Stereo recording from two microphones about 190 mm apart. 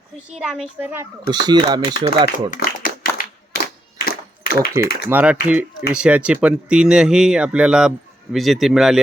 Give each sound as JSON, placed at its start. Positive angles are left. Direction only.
{"t": 0.3, "sound": "speech", "side_deg": -5}
{"t": 1.3, "sound": "speech", "side_deg": -20}
{"t": 2.5, "sound": "a sound", "side_deg": 50}
{"t": 3.5, "sound": "clapping", "side_deg": 50}
{"t": 4.5, "sound": "speech", "side_deg": -15}